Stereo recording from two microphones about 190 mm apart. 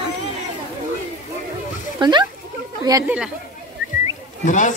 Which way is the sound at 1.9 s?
20° right (ahead or behind).